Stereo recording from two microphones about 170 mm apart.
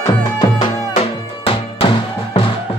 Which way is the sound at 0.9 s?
35° left (ahead or behind).